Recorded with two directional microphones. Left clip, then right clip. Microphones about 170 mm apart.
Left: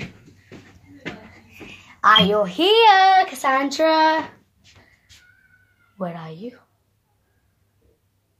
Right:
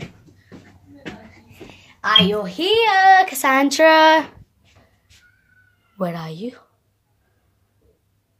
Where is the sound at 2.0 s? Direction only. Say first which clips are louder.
Left 1 dB; 10° left (ahead or behind).